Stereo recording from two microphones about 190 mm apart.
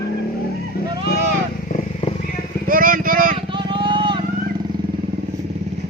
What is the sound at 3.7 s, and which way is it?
Vehicle, 25° right (ahead or behind).